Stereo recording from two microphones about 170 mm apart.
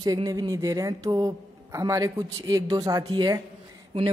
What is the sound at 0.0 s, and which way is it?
Speech, 20° right (ahead or behind).